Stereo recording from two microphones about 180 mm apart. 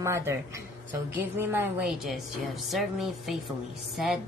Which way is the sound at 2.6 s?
Centre (ahead or behind).